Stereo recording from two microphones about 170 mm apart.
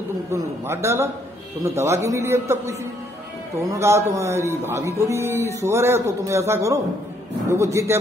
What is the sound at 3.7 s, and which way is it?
A man's voice, 15° right (ahead or behind).